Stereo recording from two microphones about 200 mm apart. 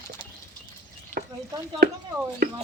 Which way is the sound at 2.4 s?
50° right (ahead or behind).